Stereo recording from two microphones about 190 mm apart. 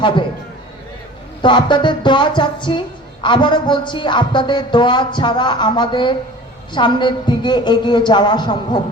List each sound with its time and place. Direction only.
1.4 s a man's voice: 25° left (ahead or behind)